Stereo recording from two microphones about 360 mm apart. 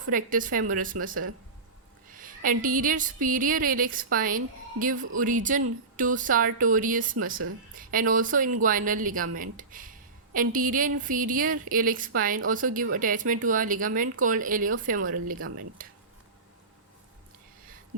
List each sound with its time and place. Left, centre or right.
0.1 s speech: right